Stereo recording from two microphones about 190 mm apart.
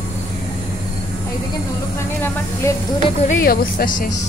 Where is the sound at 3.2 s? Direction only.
50° left (ahead or behind).